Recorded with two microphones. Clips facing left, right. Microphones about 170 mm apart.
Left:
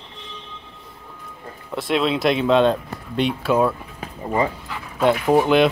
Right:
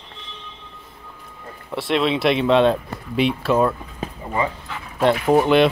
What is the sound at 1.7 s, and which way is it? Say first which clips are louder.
Speech: even; centre (ahead or behind).